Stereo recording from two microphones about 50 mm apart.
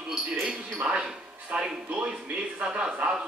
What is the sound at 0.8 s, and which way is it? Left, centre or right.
Speech, centre.